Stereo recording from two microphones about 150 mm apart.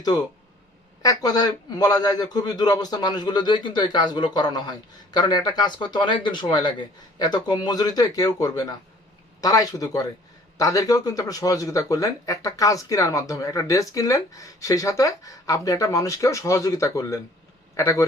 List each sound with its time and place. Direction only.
1.0 s speech: 25° left (ahead or behind)